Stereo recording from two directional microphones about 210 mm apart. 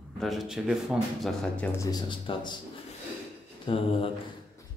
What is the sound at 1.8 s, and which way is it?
Speech, 20° left (ahead or behind).